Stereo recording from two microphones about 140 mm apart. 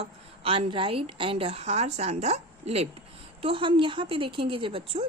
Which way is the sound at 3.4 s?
40° right (ahead or behind).